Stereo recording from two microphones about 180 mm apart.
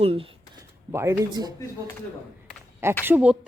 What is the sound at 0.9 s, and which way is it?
Speech, 15° right (ahead or behind).